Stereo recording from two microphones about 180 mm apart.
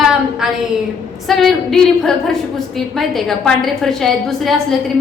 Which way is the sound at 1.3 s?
Centre (ahead or behind).